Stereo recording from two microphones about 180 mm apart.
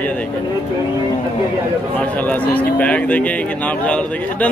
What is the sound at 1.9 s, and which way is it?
Speech, 10° left (ahead or behind).